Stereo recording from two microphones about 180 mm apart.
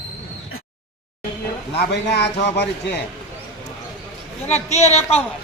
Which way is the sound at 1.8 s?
70° left (ahead or behind).